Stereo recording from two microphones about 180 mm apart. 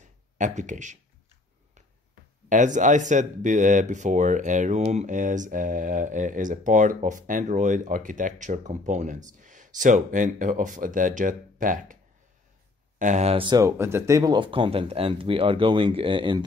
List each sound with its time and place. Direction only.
0.0 s a sound: 45° right (ahead or behind)
2.5 s speech: 45° right (ahead or behind)
13.0 s speech: 40° right (ahead or behind)
13.7 s speech: 15° right (ahead or behind)